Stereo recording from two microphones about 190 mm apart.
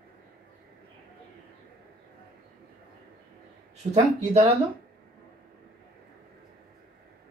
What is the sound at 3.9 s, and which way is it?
Speech, 35° right (ahead or behind).